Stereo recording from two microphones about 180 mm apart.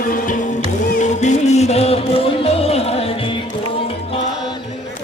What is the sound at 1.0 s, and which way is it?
Music, 40° left (ahead or behind).